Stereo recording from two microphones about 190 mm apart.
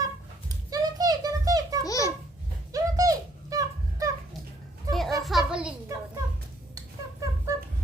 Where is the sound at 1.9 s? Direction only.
15° left (ahead or behind).